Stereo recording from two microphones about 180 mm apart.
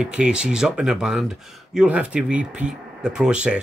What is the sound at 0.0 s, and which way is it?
A man's voice, 5° right (ahead or behind).